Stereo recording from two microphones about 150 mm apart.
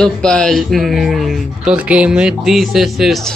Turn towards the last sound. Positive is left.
turn(degrees=0)  # may be behind; listen again after turning